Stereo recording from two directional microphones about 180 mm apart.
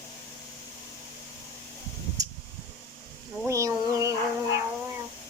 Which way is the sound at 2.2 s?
20° right (ahead or behind).